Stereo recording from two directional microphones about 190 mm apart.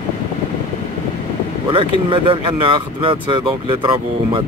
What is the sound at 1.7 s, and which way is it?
Speech, 25° right (ahead or behind).